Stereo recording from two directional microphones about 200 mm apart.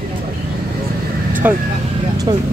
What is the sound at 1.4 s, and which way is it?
Speech, 10° right (ahead or behind).